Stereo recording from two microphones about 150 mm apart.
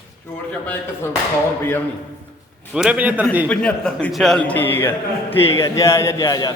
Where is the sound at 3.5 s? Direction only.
5° left (ahead or behind); by 6.5 s 25° left (ahead or behind).